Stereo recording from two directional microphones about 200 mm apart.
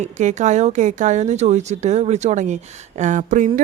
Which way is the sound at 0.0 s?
35° right (ahead or behind).